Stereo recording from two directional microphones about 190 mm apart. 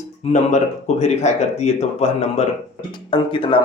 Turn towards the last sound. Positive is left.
turn(degrees=25)  # may be behind; listen again after turning